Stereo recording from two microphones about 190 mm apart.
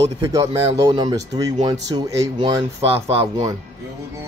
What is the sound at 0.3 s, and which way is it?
Speech, 15° right (ahead or behind).